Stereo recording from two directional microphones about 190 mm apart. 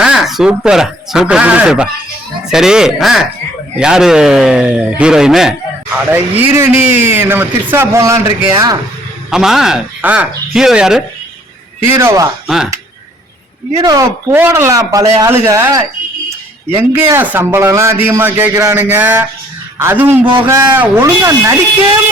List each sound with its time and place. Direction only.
0.0 s a man's voice: centre (ahead or behind)
9.3 s speech: centre (ahead or behind)
11.9 s a man's voice: 15° right (ahead or behind)
13.8 s a man's voice: 20° right (ahead or behind)